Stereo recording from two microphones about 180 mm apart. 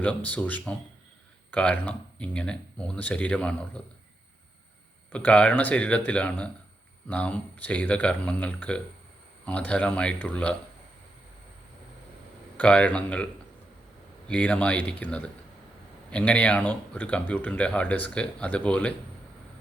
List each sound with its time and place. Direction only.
0.0 s speech: 5° left (ahead or behind)
5.1 s speech: 5° left (ahead or behind)
12.5 s speech: 5° left (ahead or behind)
14.3 s speech: 5° left (ahead or behind)